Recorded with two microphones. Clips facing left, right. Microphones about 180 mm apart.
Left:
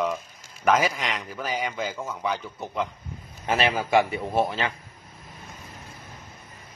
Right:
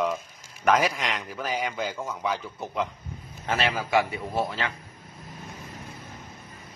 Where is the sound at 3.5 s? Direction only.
20° left (ahead or behind).